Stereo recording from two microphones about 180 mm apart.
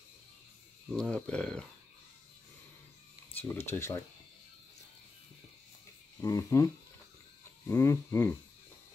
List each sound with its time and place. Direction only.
0.9 s speech: 5° left (ahead or behind)
3.3 s speech: 10° left (ahead or behind)
6.2 s speech: 15° left (ahead or behind)